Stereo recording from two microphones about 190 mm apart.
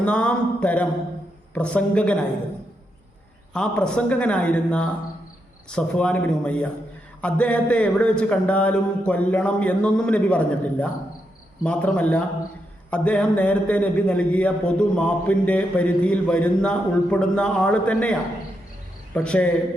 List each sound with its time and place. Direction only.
0.0 s a man's voice: 5° left (ahead or behind)
3.5 s a man's voice: 5° left (ahead or behind)